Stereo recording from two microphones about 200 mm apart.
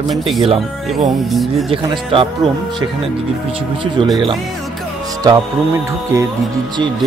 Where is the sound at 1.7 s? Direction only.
25° right (ahead or behind).